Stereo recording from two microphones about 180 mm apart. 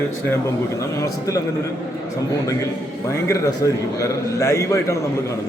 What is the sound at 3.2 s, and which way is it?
A man's voice, 15° left (ahead or behind).